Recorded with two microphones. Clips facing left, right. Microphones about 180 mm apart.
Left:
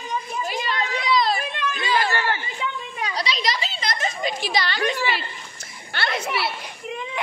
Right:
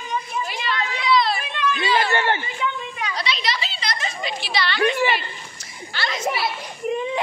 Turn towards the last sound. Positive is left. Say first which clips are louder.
# right 7 dB
turn(degrees=-35)  # may be behind; listen again after turning